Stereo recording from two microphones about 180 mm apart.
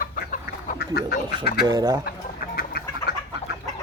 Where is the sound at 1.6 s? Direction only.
20° right (ahead or behind).